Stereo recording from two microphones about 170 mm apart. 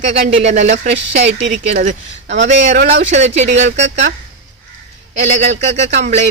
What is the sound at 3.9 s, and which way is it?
Speech, 90° right.